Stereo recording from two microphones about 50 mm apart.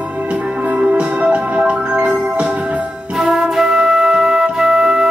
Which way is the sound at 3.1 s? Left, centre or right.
Centre.